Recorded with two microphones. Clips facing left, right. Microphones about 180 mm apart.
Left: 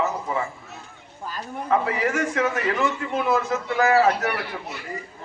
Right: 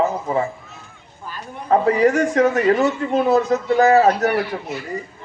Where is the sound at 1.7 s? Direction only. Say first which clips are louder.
Right 8 dB; 40° right (ahead or behind).